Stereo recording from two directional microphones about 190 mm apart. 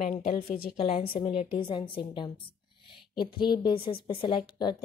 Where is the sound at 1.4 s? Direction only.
30° left (ahead or behind).